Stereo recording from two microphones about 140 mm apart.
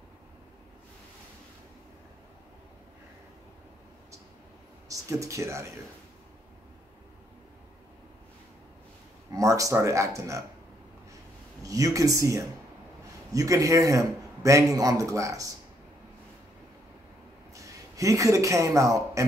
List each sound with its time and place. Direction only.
4.8 s speech: 20° right (ahead or behind)
9.3 s a man's voice: 25° right (ahead or behind)
11.6 s a man's voice: 25° right (ahead or behind)
17.6 s speech: 25° right (ahead or behind)